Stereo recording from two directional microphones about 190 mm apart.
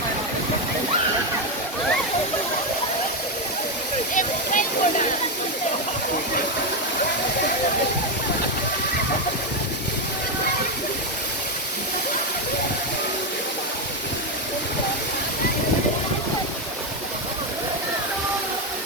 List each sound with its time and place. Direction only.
4.1 s waterfall: 45° left (ahead or behind)